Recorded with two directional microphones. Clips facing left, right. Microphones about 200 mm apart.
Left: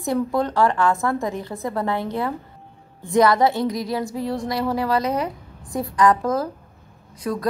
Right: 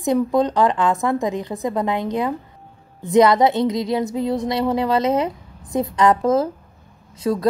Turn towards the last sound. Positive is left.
turn(degrees=-25)  # may be behind; listen again after turning